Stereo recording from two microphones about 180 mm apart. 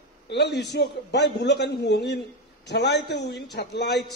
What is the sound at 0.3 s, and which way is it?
A man's voice, 70° left (ahead or behind).